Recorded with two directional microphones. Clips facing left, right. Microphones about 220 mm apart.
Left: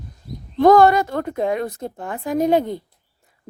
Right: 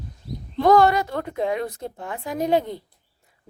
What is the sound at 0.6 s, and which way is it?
Speech, 45° left (ahead or behind).